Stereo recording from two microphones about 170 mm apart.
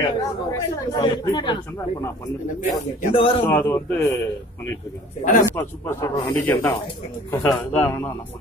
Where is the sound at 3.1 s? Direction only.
30° left (ahead or behind).